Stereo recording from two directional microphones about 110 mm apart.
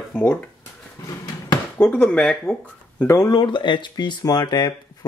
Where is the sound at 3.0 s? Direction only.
25° left (ahead or behind).